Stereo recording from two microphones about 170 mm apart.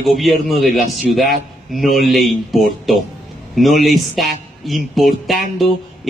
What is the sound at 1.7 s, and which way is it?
A man's voice, centre (ahead or behind).